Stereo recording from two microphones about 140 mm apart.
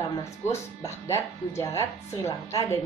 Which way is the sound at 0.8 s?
20° left (ahead or behind).